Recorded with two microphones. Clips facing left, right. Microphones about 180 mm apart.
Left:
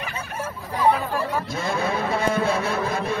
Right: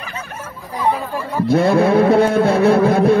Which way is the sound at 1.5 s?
65° right (ahead or behind).